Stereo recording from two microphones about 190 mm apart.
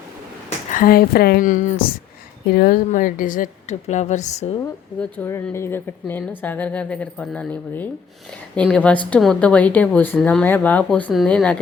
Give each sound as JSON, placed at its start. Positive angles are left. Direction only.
{"t": 0.7, "sound": "a woman's voice", "side_deg": 50}
{"t": 4.6, "sound": "speech", "side_deg": 10}